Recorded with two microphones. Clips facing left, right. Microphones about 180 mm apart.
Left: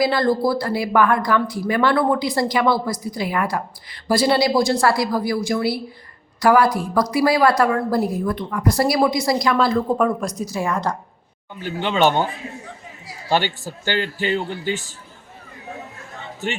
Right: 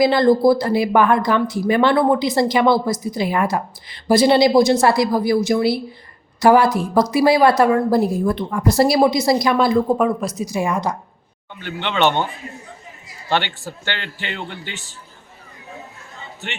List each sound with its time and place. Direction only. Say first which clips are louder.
0.0 s speech: right 5 dB; 20° right (ahead or behind); by 10.4 s 5° right (ahead or behind)
10.4 s a woman's voice: right 2 dB; 15° right (ahead or behind)
11.6 s speech: left 1 dB; 40° left (ahead or behind)
13.2 s speech: left 1 dB; 10° left (ahead or behind)
13.9 s speech: left 12 dB; 40° left (ahead or behind)